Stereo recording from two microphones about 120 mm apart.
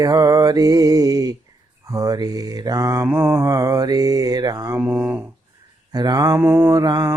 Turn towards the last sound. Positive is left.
turn(degrees=-35)  # may be behind; listen again after turning